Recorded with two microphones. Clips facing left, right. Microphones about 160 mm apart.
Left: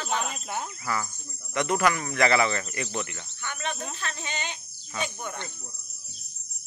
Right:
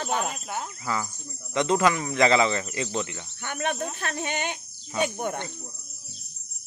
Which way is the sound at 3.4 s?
55° right (ahead or behind).